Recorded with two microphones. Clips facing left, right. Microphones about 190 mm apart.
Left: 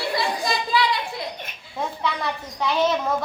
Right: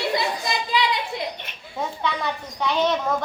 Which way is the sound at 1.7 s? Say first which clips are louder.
Even; centre (ahead or behind).